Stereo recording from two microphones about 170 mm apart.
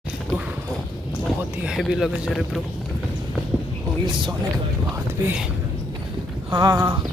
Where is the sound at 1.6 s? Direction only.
Centre (ahead or behind).